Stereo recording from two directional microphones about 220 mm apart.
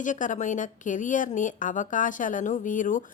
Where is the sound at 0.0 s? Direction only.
35° left (ahead or behind).